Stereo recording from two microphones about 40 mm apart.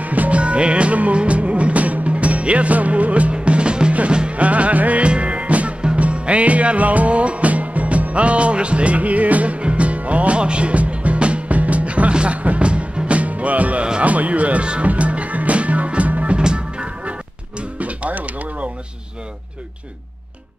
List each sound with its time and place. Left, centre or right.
0.0 s music: right
16.3 s music: right